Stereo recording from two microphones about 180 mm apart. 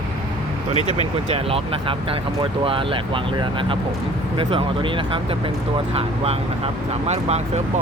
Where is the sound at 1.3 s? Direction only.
30° right (ahead or behind).